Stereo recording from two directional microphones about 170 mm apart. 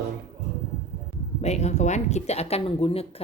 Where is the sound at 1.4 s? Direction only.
40° left (ahead or behind).